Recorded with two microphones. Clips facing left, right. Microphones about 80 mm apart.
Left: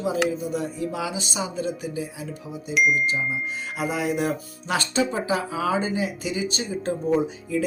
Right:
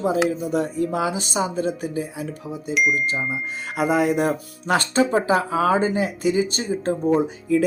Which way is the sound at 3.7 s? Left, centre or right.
Right.